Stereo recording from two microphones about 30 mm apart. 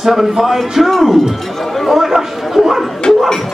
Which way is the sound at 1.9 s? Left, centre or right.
Centre.